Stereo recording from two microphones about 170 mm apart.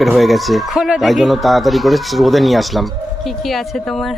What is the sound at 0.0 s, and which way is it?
Speech, centre (ahead or behind).